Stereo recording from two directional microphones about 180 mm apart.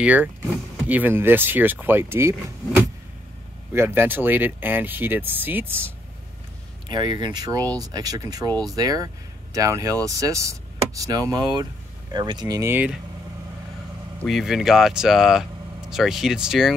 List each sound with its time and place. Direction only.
0.0 s speech: 10° right (ahead or behind)
6.9 s speech: 25° right (ahead or behind); by 13.0 s 10° right (ahead or behind)
14.2 s speech: centre (ahead or behind)